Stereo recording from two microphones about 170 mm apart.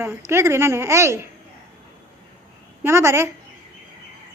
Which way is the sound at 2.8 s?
15° right (ahead or behind).